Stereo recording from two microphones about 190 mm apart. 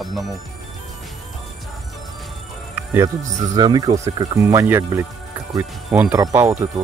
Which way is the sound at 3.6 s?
20° right (ahead or behind).